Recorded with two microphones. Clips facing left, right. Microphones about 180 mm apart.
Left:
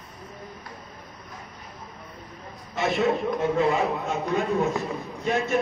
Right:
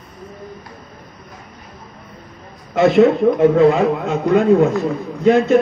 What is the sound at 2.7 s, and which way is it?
A man's voice, 75° right (ahead or behind).